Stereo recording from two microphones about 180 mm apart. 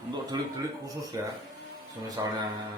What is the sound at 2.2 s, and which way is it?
Speech, 20° right (ahead or behind).